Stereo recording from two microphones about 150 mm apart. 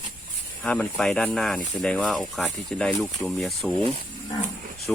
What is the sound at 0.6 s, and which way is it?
Speech, 10° left (ahead or behind).